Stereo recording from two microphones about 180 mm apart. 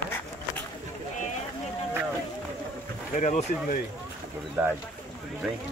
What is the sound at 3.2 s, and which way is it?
Speech, 45° left (ahead or behind).